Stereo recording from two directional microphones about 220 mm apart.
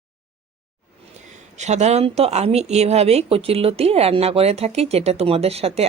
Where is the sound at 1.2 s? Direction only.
30° right (ahead or behind).